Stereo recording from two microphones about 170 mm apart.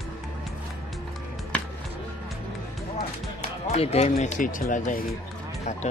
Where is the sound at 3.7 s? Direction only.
40° left (ahead or behind).